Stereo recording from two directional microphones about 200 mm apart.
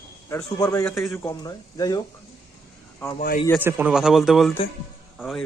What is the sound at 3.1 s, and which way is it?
Speech, 45° left (ahead or behind).